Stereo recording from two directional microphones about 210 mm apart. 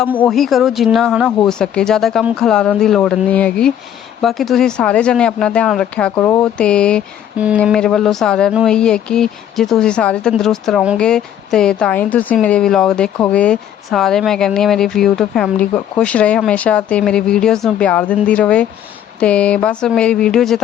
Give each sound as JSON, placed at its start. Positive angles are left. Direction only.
{"t": 0.2, "sound": "speech", "side_deg": 0}
{"t": 7.3, "sound": "speech", "side_deg": -5}